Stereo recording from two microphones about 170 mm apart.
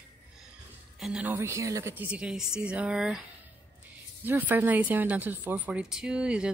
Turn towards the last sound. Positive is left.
turn(degrees=-5)  # may be behind; listen again after turning